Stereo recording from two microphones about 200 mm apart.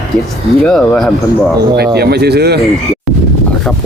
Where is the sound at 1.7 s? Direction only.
55° right (ahead or behind).